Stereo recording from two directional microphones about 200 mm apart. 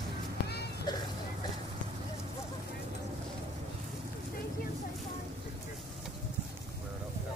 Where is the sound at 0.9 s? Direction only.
20° left (ahead or behind).